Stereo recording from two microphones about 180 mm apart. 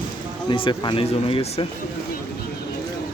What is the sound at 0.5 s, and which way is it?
Speech, 25° left (ahead or behind).